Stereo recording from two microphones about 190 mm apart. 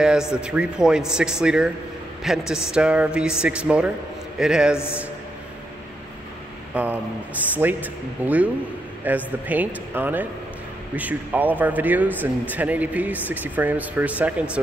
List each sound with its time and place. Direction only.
0.0 s speech: 5° right (ahead or behind)
6.7 s a sound: 10° right (ahead or behind)
7.5 s speech: 10° right (ahead or behind)